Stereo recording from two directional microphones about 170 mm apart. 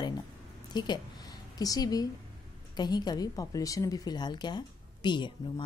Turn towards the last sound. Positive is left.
turn(degrees=25)  # may be behind; listen again after turning